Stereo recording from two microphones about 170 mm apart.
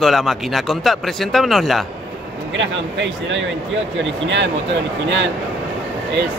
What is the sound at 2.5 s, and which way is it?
Speech, 90° right.